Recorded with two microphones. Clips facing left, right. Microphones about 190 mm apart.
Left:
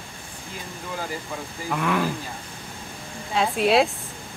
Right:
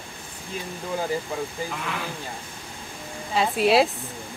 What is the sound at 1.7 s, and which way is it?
Speech, 55° left (ahead or behind).